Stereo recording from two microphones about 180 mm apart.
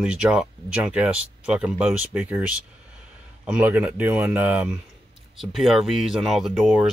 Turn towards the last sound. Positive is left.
turn(degrees=0)  # may be behind; listen again after turning